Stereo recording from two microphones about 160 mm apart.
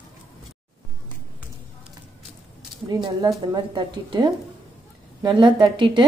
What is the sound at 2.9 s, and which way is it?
A woman's voice, 25° right (ahead or behind).